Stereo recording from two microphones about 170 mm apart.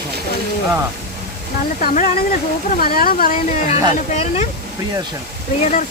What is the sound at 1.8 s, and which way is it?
A woman's voice, 55° left (ahead or behind).